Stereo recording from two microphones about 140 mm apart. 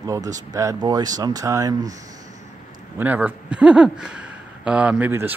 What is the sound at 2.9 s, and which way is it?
Speech, 10° right (ahead or behind).